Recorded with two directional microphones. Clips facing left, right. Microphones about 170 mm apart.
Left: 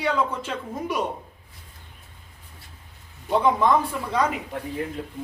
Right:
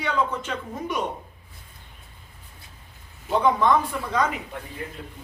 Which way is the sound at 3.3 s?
Centre (ahead or behind).